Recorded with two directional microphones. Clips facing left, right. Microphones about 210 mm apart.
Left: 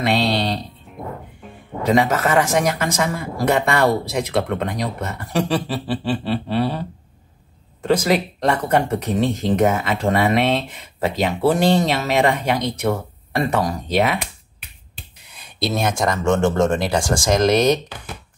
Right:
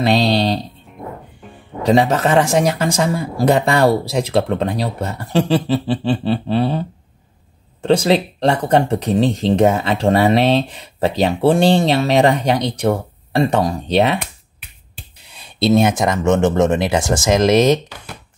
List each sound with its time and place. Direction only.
0.0 s music: 35° right (ahead or behind)
1.9 s speech: 30° right (ahead or behind)
7.8 s speech: 30° right (ahead or behind)
15.3 s speech: 25° right (ahead or behind)